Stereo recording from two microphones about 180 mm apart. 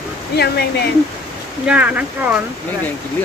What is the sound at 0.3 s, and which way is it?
Speech, 65° left (ahead or behind).